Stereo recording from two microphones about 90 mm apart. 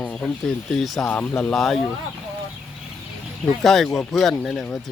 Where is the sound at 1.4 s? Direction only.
5° left (ahead or behind).